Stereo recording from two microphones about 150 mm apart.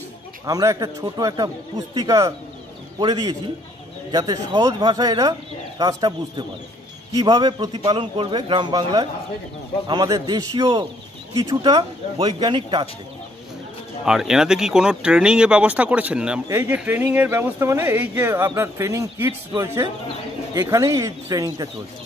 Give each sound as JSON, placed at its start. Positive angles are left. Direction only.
{"t": 0.5, "sound": "a man's voice", "side_deg": -25}
{"t": 14.0, "sound": "a man's voice", "side_deg": -5}